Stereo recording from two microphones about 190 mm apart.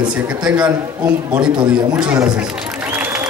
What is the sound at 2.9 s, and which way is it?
Applause, 10° right (ahead or behind).